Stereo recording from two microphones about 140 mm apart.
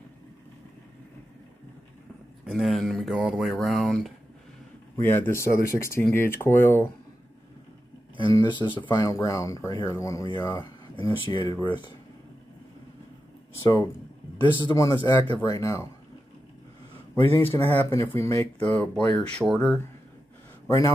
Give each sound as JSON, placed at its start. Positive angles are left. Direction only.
{"t": 2.4, "sound": "speech", "side_deg": 0}
{"t": 5.0, "sound": "speech", "side_deg": 15}
{"t": 8.3, "sound": "speech", "side_deg": 30}
{"t": 13.6, "sound": "speech", "side_deg": 30}
{"t": 17.3, "sound": "speech", "side_deg": 15}
{"t": 20.6, "sound": "a man's voice", "side_deg": 20}